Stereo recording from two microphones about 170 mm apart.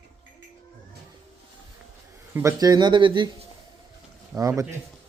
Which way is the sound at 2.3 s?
15° right (ahead or behind).